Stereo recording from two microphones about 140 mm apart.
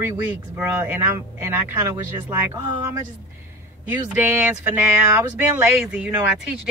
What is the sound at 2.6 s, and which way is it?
Speech, 35° right (ahead or behind).